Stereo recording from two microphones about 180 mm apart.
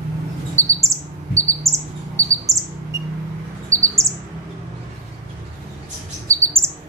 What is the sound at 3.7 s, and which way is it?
Chirp, 15° right (ahead or behind).